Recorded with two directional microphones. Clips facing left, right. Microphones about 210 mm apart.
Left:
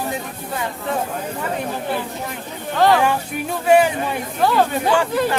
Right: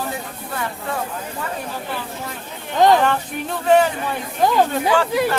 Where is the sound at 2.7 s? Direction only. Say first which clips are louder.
Right 1 dB; 20° right (ahead or behind).